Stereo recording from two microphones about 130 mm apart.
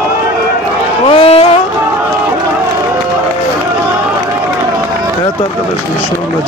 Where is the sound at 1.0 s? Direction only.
45° left (ahead or behind).